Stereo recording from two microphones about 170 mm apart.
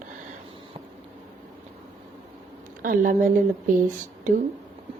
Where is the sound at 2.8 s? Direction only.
50° right (ahead or behind).